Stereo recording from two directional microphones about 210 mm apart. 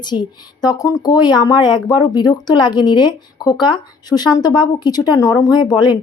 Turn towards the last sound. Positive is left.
turn(degrees=20)  # may be behind; listen again after turning